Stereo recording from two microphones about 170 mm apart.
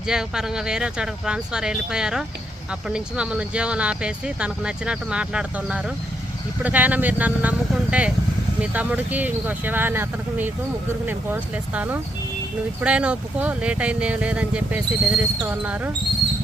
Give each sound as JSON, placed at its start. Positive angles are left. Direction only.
{"t": 0.1, "sound": "speech", "side_deg": -5}